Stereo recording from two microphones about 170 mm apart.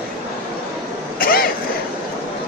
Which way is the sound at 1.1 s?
60° left (ahead or behind).